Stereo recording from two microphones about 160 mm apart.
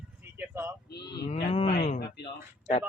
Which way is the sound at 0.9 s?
90° left.